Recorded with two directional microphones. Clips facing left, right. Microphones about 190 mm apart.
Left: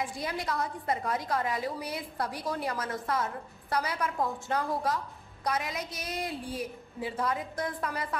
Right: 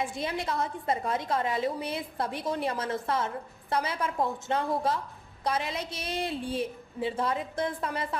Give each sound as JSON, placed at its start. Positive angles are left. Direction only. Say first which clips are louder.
{"t": 0.0, "sound": "a woman's voice", "louder": "right 2 dB", "side_deg": -25}